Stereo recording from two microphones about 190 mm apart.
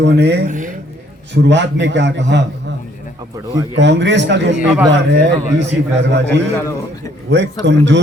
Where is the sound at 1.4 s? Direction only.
70° right (ahead or behind).